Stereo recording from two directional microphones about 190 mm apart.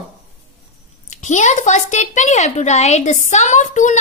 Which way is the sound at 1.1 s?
40° left (ahead or behind).